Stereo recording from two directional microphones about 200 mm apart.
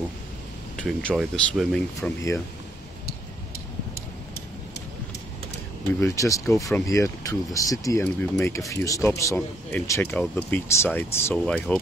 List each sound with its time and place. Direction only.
0.7 s speech: centre (ahead or behind)
5.9 s a man's voice: 15° left (ahead or behind)